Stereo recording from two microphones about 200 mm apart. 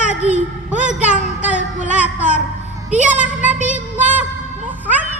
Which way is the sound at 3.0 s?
40° right (ahead or behind).